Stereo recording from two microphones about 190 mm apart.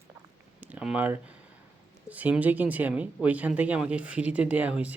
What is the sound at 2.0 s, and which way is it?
Speech, 10° right (ahead or behind).